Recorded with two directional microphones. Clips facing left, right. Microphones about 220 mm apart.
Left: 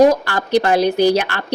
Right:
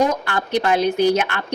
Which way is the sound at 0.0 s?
35° left (ahead or behind).